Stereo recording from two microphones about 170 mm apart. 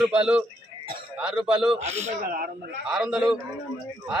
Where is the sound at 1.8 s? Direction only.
40° right (ahead or behind); by 2.5 s 55° right (ahead or behind).